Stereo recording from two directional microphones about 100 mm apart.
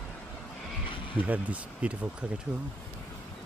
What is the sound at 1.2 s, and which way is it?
Speech, 15° right (ahead or behind).